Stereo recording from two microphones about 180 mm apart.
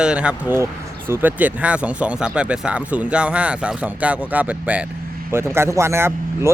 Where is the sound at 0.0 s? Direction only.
5° right (ahead or behind).